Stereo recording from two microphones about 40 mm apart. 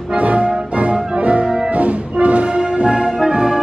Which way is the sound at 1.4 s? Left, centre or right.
Centre.